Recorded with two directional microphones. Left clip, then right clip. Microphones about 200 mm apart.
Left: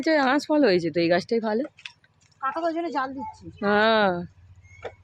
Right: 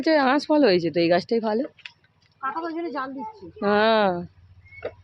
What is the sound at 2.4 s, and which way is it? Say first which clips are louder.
Speech: left 2 dB; 55° left (ahead or behind).